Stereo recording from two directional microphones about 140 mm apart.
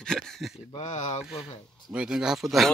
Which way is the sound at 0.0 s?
5° left (ahead or behind).